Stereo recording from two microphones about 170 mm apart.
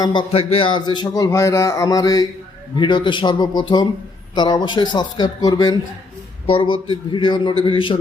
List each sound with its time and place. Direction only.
0.0 s speech: 25° left (ahead or behind)